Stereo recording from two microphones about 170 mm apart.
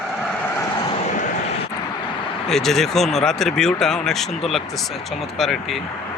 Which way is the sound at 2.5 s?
Centre (ahead or behind).